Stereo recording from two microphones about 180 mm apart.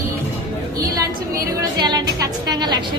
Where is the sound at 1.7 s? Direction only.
25° right (ahead or behind).